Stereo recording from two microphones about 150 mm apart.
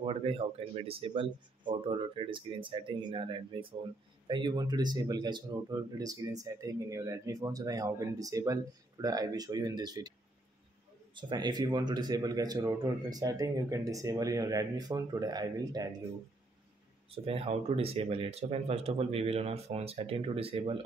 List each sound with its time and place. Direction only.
0.0 s speech: 40° right (ahead or behind)
11.1 s speech: 30° right (ahead or behind)
17.1 s speech: 40° right (ahead or behind)